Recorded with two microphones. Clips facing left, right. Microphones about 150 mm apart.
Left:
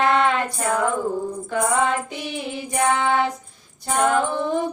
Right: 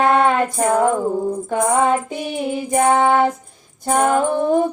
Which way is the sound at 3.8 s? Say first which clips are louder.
Right 4 dB; 45° right (ahead or behind).